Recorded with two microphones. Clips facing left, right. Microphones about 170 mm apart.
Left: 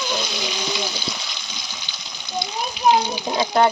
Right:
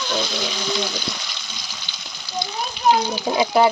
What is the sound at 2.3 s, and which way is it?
Frying, 15° left (ahead or behind).